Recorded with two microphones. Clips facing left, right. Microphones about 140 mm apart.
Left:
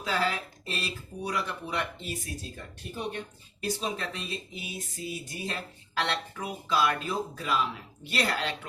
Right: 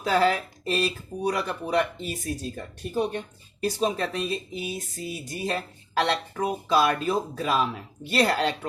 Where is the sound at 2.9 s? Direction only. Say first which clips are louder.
Right 8 dB; 35° right (ahead or behind).